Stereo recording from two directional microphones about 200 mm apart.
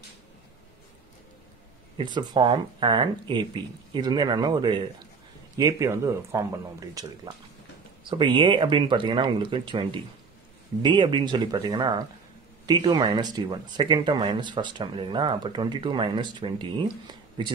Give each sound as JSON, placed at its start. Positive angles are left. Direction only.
{"t": 2.0, "sound": "speech", "side_deg": -20}